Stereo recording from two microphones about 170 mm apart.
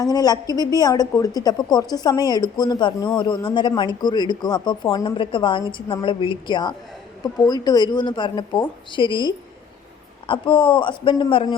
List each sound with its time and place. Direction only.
0.0 s speech: 25° left (ahead or behind)